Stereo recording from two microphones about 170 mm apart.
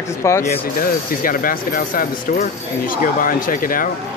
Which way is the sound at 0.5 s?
55° left (ahead or behind).